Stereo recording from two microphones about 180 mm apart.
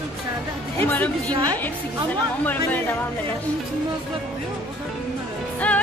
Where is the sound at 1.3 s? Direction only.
20° right (ahead or behind).